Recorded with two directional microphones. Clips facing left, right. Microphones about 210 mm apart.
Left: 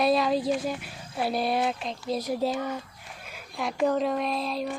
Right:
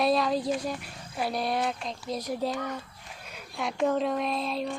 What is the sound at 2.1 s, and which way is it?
Speech, 30° left (ahead or behind).